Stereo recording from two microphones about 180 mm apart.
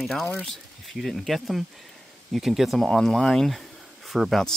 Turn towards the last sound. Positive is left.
turn(degrees=0)  # may be behind; listen again after turning